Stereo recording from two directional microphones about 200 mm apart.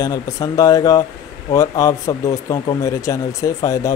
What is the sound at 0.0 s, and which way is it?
Speech, 15° left (ahead or behind).